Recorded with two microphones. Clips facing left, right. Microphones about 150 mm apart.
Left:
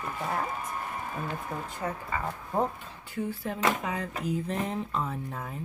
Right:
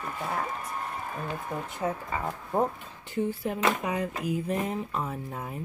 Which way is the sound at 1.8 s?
20° right (ahead or behind).